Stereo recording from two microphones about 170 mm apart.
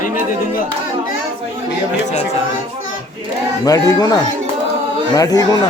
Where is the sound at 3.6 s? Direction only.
20° left (ahead or behind).